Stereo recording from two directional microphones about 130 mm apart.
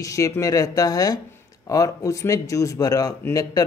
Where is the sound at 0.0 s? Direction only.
25° left (ahead or behind).